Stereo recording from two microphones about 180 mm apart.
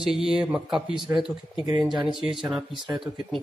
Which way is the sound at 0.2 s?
5° right (ahead or behind).